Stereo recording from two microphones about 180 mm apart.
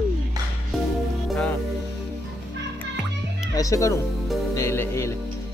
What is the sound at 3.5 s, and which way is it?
Speech, 20° left (ahead or behind).